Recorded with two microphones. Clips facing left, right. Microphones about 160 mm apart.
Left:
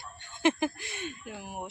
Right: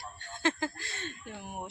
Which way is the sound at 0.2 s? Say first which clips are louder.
Left 5 dB; 15° left (ahead or behind).